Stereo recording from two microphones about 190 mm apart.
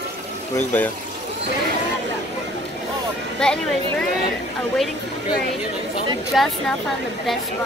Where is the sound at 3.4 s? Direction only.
5° left (ahead or behind).